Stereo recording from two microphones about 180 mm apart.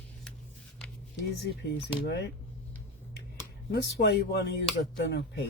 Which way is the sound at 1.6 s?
65° left (ahead or behind).